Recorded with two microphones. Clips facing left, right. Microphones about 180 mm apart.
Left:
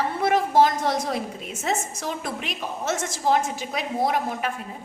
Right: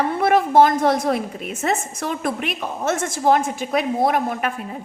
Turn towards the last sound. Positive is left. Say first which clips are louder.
# right 4 dB
turn(degrees=-60)  # may be behind; listen again after turning